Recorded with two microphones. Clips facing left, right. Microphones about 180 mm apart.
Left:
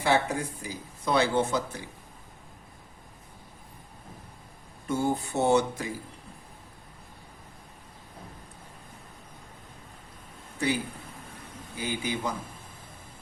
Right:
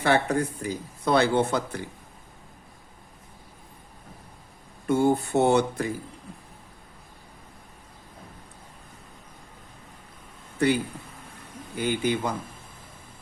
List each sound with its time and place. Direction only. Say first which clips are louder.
0.0 s speech: right 3 dB; 60° right (ahead or behind)
4.9 s speech: right 6 dB; 60° right (ahead or behind)
11.8 s speech: right 6 dB; 55° right (ahead or behind)